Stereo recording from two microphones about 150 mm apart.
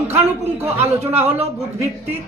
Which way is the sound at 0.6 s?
15° right (ahead or behind).